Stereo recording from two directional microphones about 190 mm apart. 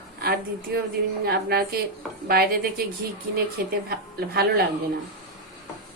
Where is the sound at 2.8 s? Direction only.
50° right (ahead or behind).